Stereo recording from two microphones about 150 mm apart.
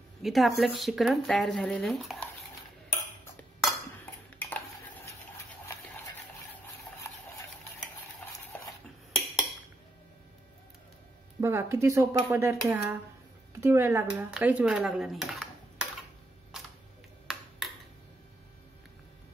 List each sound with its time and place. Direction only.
0.2 s speech: centre (ahead or behind)
3.6 s cutlery: 10° left (ahead or behind)
8.2 s stir: 10° left (ahead or behind)
11.4 s speech: 15° right (ahead or behind)
17.3 s a sound: centre (ahead or behind)